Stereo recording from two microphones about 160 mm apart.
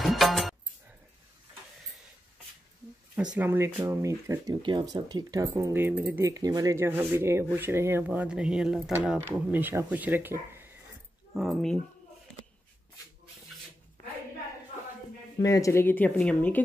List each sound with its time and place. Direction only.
0.0 s music: centre (ahead or behind)
3.3 s speech: 15° right (ahead or behind)
11.3 s speech: centre (ahead or behind)
15.4 s speech: 20° left (ahead or behind)